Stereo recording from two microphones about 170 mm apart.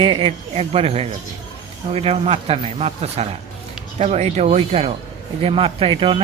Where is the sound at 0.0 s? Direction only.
35° right (ahead or behind).